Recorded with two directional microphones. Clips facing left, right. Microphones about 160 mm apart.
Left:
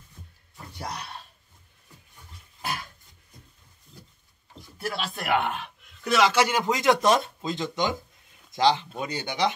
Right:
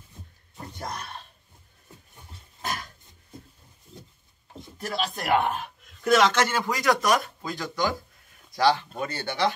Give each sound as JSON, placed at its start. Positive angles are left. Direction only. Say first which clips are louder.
{"t": 5.0, "sound": "speech", "louder": "right 3 dB", "side_deg": -40}
{"t": 6.0, "sound": "speech", "louder": "right 1 dB", "side_deg": 5}